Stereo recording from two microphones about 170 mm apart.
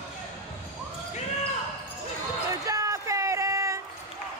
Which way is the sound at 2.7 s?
20° right (ahead or behind).